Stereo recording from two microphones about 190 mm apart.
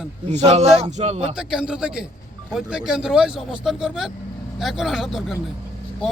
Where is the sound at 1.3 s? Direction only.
5° right (ahead or behind).